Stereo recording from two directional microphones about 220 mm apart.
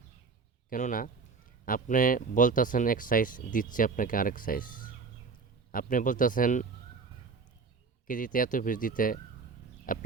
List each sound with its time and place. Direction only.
0.7 s speech: 40° left (ahead or behind)
8.0 s speech: 40° left (ahead or behind)